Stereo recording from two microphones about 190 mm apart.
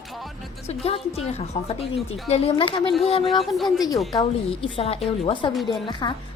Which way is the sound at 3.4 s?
Centre (ahead or behind).